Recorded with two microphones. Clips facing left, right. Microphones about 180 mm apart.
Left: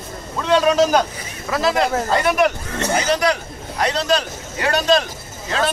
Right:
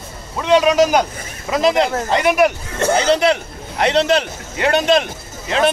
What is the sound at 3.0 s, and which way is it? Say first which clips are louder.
Speech: right 3 dB; 25° right (ahead or behind).